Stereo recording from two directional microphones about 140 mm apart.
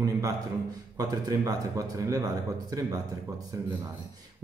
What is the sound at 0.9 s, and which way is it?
Speech, 25° right (ahead or behind).